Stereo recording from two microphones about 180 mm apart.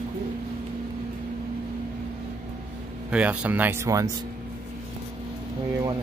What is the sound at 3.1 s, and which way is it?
Speech, 5° right (ahead or behind).